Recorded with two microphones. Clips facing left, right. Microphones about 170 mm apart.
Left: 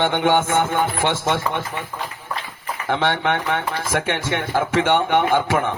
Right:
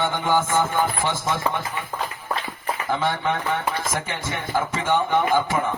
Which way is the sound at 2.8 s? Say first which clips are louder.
Left 4 dB; 75° left (ahead or behind).